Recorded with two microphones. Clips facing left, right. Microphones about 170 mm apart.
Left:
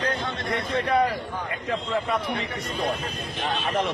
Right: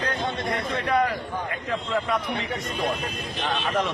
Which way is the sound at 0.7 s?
30° left (ahead or behind).